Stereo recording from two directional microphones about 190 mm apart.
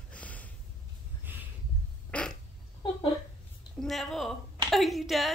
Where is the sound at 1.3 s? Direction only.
10° right (ahead or behind).